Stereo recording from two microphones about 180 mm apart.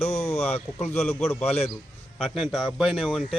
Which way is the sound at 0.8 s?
10° left (ahead or behind).